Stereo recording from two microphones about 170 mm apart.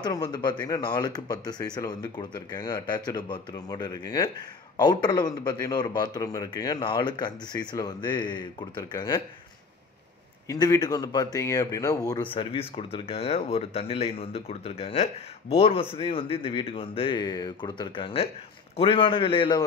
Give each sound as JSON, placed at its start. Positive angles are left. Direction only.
{"t": 0.0, "sound": "a man's voice", "side_deg": 25}
{"t": 10.5, "sound": "a man's voice", "side_deg": 20}